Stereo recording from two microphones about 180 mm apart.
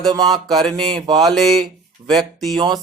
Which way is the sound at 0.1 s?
25° right (ahead or behind).